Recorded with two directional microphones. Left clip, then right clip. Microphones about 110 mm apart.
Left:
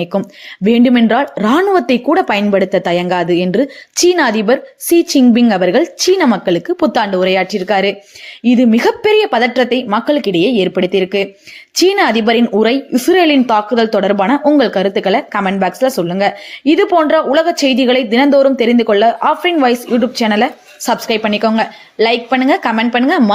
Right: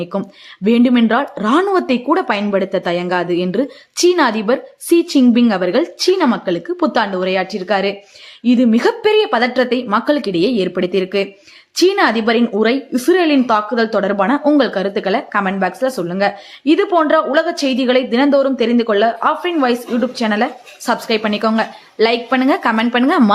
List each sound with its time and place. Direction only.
0.0 s speech: 30° left (ahead or behind); by 23.2 s 15° left (ahead or behind)